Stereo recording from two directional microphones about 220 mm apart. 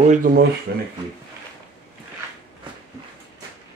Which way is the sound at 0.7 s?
45° right (ahead or behind).